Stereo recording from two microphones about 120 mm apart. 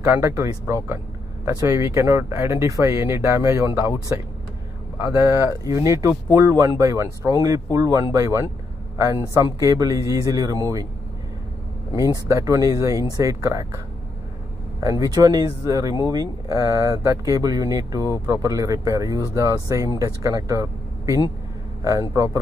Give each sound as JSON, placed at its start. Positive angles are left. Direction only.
{"t": 0.0, "sound": "speech", "side_deg": -25}
{"t": 5.1, "sound": "speech", "side_deg": -20}
{"t": 11.9, "sound": "speech", "side_deg": -25}
{"t": 14.8, "sound": "speech", "side_deg": -25}